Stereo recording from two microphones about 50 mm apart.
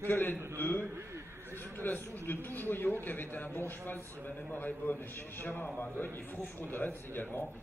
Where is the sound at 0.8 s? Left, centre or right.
Right.